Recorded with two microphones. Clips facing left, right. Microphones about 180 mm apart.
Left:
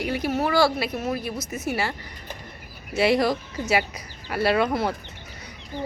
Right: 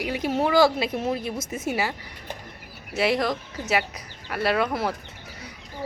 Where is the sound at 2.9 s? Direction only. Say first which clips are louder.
Left 3 dB; centre (ahead or behind).